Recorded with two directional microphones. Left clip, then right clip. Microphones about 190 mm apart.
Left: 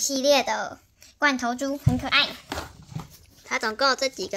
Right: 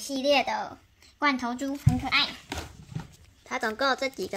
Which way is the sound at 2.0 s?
55° left (ahead or behind).